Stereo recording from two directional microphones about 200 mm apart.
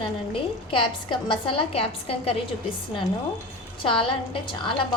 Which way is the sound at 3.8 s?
25° left (ahead or behind).